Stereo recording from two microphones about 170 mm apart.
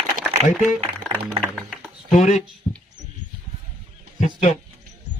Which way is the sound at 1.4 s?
Centre (ahead or behind).